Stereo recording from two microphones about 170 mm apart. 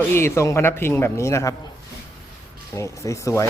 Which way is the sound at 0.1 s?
15° left (ahead or behind).